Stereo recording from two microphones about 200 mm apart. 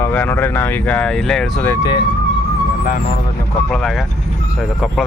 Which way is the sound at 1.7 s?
20° left (ahead or behind).